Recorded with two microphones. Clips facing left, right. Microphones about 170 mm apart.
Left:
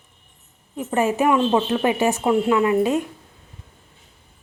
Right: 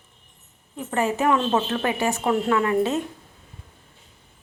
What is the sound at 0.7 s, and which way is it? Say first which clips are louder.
A woman's voice: left 3 dB; 15° left (ahead or behind).